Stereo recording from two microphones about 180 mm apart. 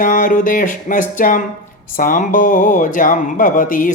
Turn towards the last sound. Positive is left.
turn(degrees=50)  # may be behind; listen again after turning